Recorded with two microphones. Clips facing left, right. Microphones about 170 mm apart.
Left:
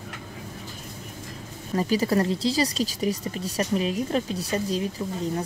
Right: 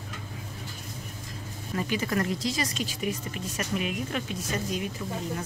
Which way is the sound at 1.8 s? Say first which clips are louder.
Left 6 dB; 35° left (ahead or behind).